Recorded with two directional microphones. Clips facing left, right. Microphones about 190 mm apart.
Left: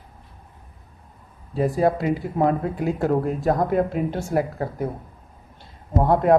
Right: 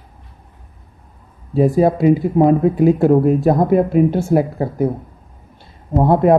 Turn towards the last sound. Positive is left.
turn(degrees=-15)  # may be behind; listen again after turning